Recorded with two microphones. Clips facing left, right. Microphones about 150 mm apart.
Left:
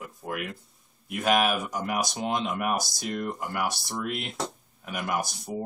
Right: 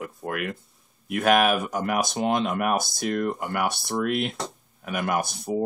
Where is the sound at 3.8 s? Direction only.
55° right (ahead or behind).